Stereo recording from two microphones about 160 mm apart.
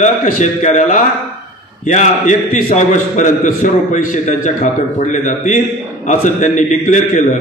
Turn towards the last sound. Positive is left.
turn(degrees=50)  # may be behind; listen again after turning